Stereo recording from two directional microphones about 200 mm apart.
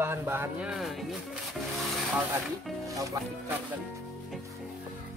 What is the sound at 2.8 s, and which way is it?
Speech, 15° right (ahead or behind).